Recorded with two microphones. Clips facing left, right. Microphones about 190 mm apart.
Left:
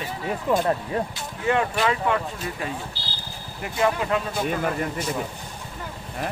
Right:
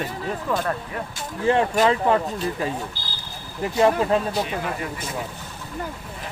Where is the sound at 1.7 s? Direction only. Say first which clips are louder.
Right 4 dB; 35° right (ahead or behind).